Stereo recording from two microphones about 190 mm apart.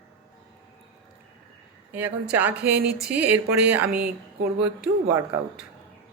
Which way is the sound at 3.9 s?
55° right (ahead or behind).